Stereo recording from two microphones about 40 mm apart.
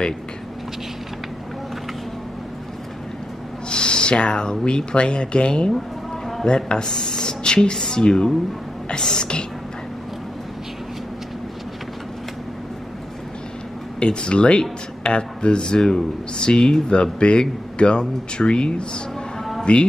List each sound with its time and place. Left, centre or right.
3.6 s speech: left
8.8 s whispering: centre
13.9 s speech: left